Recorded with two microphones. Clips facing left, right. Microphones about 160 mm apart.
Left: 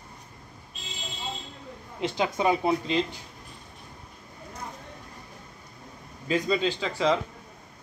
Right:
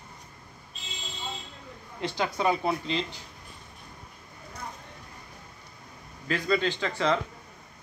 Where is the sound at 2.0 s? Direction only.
20° left (ahead or behind).